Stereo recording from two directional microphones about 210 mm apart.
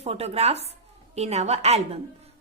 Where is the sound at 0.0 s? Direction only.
30° right (ahead or behind).